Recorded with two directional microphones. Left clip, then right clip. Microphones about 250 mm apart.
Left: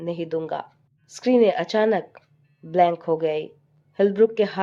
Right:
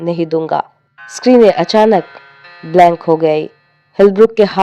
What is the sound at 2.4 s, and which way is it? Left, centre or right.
Music, right.